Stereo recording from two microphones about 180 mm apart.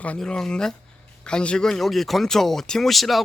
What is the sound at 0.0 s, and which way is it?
A man's voice, 5° left (ahead or behind).